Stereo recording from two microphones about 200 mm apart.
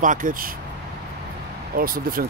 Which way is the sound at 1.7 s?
45° right (ahead or behind).